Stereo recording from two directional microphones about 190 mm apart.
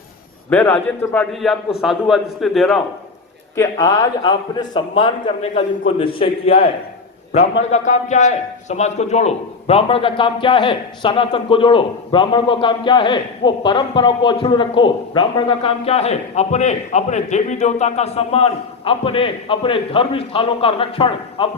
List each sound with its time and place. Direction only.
0.5 s a man's voice: 10° left (ahead or behind)
3.5 s a man's voice: 15° left (ahead or behind)